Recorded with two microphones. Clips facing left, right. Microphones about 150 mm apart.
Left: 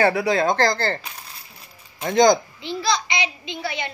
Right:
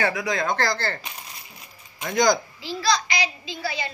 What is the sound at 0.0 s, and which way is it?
Speech, 30° left (ahead or behind).